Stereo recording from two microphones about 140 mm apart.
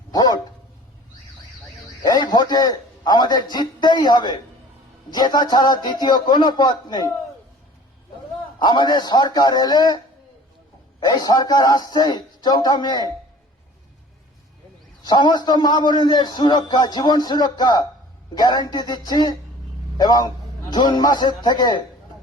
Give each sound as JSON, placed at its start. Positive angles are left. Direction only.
{"t": 0.1, "sound": "dog", "side_deg": 25}
{"t": 2.0, "sound": "a man's voice", "side_deg": 25}
{"t": 8.5, "sound": "a man's voice", "side_deg": 30}
{"t": 11.0, "sound": "a man's voice", "side_deg": 25}
{"t": 15.0, "sound": "a man's voice", "side_deg": 30}